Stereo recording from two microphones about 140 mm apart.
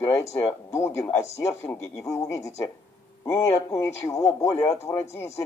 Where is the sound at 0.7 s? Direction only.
20° left (ahead or behind).